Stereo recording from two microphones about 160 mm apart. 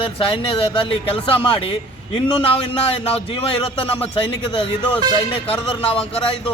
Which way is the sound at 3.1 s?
35° left (ahead or behind).